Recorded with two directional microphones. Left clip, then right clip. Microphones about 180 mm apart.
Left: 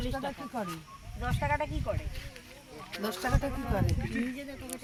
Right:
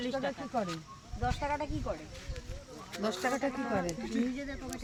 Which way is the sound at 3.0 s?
15° right (ahead or behind).